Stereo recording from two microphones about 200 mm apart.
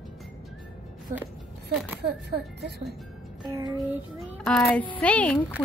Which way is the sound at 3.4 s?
20° right (ahead or behind).